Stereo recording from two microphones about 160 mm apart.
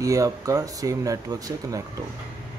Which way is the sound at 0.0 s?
20° right (ahead or behind).